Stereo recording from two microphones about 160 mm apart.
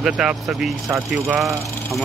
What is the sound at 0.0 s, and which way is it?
Speech, 5° right (ahead or behind).